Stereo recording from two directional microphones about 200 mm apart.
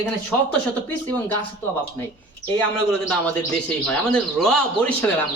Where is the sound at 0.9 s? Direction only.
10° left (ahead or behind).